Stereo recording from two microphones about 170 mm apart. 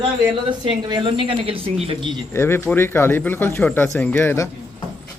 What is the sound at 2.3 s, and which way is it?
Speech, 15° left (ahead or behind).